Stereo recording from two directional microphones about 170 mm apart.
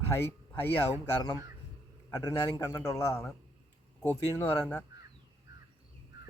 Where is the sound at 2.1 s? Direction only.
20° left (ahead or behind).